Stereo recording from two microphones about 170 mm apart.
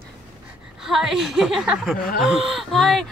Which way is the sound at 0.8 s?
5° right (ahead or behind).